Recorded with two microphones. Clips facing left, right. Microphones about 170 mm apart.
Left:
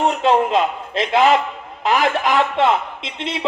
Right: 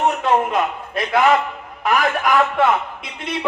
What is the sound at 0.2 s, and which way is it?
Speech, 30° left (ahead or behind).